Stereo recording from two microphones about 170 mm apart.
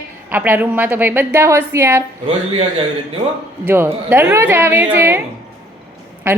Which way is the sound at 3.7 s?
15° right (ahead or behind).